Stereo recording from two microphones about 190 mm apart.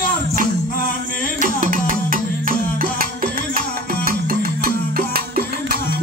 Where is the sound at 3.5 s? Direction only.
50° right (ahead or behind).